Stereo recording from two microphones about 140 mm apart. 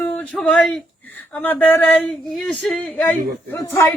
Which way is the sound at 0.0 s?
10° left (ahead or behind).